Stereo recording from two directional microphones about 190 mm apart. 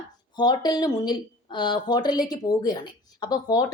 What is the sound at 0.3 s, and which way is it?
A woman's voice, 20° left (ahead or behind).